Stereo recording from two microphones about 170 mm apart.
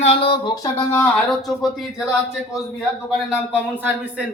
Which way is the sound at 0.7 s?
10° left (ahead or behind).